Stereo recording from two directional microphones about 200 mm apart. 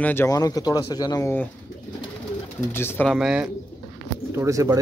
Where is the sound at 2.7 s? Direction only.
10° left (ahead or behind).